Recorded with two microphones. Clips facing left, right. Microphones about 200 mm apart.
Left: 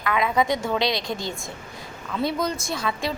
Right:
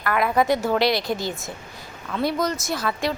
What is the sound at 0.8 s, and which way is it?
Speech, 20° left (ahead or behind).